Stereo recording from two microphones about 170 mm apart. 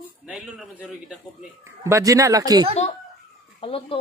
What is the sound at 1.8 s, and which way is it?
Speech, 20° right (ahead or behind).